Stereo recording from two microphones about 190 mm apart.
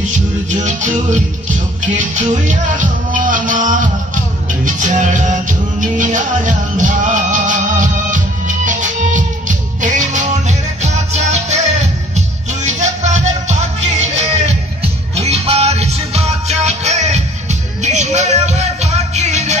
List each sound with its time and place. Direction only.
0.0 s music: 40° right (ahead or behind)
12.6 s music: 40° right (ahead or behind)